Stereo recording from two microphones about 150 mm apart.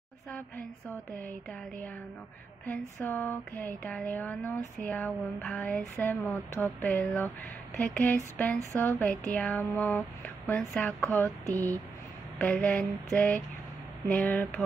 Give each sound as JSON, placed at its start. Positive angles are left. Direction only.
{"t": 0.3, "sound": "speech", "side_deg": 5}
{"t": 3.0, "sound": "speech", "side_deg": 15}
{"t": 12.4, "sound": "speech", "side_deg": 10}